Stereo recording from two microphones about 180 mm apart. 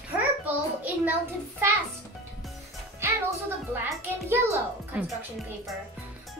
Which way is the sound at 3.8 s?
15° right (ahead or behind).